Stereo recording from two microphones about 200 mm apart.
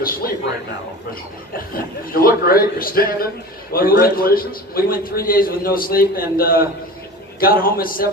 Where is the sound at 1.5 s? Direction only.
45° left (ahead or behind).